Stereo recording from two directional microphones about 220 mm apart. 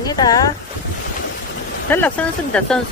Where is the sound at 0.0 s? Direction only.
15° left (ahead or behind).